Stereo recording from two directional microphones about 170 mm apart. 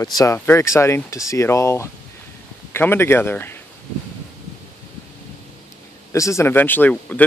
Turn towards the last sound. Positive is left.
turn(degrees=10)  # may be behind; listen again after turning